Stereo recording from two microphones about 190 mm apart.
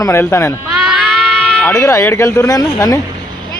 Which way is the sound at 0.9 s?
5° left (ahead or behind).